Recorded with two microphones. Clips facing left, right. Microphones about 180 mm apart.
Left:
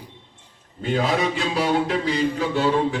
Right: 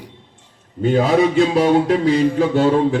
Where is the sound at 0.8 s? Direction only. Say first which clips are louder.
Right 7 dB; 45° right (ahead or behind).